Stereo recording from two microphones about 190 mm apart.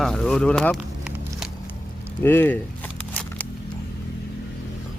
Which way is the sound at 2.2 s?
10° left (ahead or behind).